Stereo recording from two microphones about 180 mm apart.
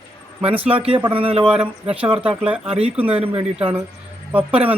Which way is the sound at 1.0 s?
30° right (ahead or behind).